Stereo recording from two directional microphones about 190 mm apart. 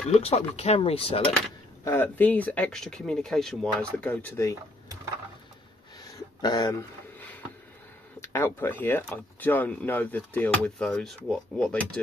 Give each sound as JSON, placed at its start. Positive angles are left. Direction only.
{"t": 0.1, "sound": "speech", "side_deg": 35}
{"t": 1.9, "sound": "speech", "side_deg": 10}
{"t": 6.4, "sound": "speech", "side_deg": 20}